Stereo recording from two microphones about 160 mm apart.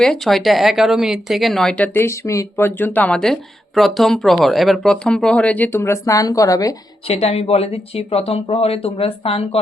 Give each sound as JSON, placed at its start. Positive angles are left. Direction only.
{"t": 0.0, "sound": "speech", "side_deg": 0}
{"t": 7.0, "sound": "speech", "side_deg": 40}